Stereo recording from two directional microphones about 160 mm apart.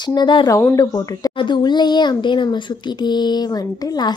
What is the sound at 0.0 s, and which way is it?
A woman's voice, 30° left (ahead or behind).